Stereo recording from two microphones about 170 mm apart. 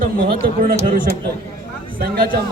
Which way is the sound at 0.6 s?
60° right (ahead or behind).